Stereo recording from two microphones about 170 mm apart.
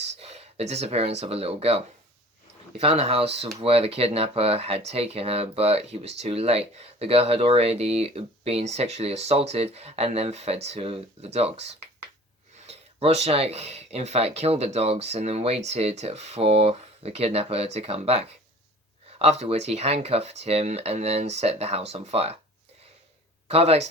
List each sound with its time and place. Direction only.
0.0 s speech: 40° right (ahead or behind)
23.5 s speech: 35° right (ahead or behind)